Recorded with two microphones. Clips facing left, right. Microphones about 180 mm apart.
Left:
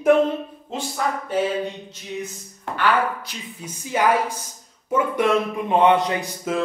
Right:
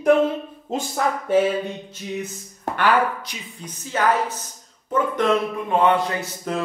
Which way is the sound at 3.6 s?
10° left (ahead or behind).